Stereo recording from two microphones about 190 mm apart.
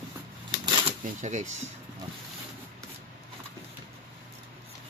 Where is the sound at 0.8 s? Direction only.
40° right (ahead or behind).